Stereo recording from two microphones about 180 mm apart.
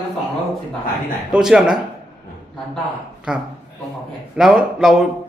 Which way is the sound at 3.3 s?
5° right (ahead or behind).